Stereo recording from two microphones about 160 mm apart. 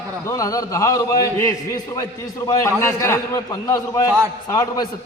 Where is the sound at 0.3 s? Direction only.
20° left (ahead or behind).